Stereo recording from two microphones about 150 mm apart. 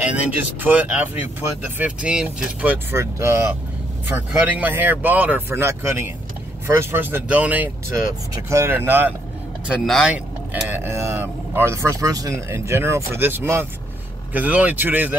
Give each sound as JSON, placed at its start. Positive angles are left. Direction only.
{"t": 0.0, "sound": "speech", "side_deg": -10}
{"t": 2.9, "sound": "speech", "side_deg": -20}
{"t": 9.7, "sound": "speech", "side_deg": -5}